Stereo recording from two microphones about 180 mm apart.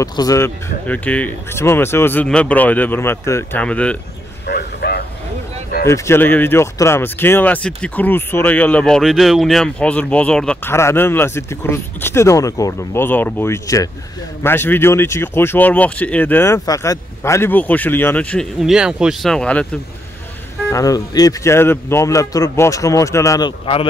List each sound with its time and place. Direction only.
0.0 s speech: 20° left (ahead or behind)
4.5 s a sound: 65° left (ahead or behind)
5.9 s speech: 15° left (ahead or behind)
20.7 s speech: 20° left (ahead or behind)
23.6 s a man's voice: 30° left (ahead or behind)